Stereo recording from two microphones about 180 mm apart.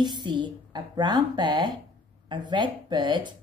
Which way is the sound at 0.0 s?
25° right (ahead or behind).